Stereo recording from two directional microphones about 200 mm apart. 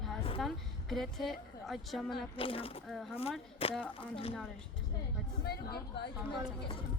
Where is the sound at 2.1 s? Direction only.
25° left (ahead or behind).